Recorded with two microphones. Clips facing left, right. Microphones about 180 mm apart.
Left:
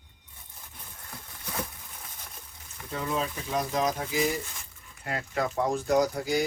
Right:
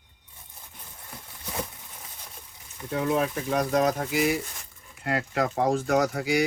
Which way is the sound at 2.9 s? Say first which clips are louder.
Right 6 dB; 65° right (ahead or behind).